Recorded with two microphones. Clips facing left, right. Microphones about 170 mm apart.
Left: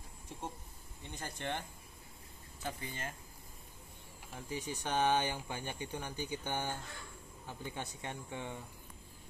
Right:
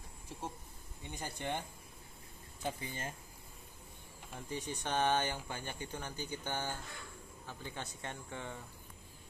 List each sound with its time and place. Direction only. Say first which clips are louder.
1.1 s speech: right 1 dB; 15° right (ahead or behind)
2.6 s speech: right 2 dB; 15° right (ahead or behind)
4.3 s speech: even; 5° left (ahead or behind)